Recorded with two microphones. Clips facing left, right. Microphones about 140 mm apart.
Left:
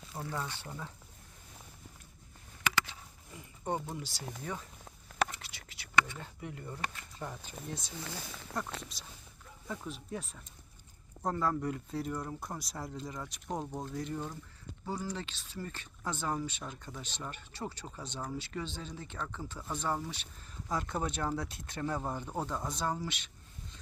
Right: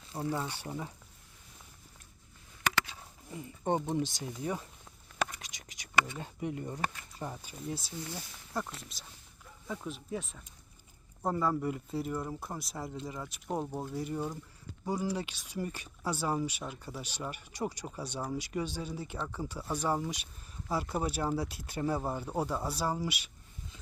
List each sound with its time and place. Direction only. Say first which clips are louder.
0.4 s speech: right 4 dB; 15° right (ahead or behind)
3.6 s speech: right 6 dB; 20° right (ahead or behind)